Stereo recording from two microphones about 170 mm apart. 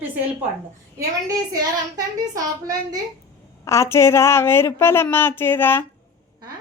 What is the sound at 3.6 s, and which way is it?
A woman's voice, 15° left (ahead or behind).